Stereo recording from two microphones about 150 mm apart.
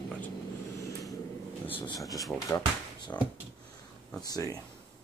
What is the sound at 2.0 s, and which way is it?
Speech, 25° left (ahead or behind).